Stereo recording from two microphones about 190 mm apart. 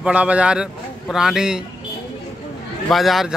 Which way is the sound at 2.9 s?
Centre (ahead or behind).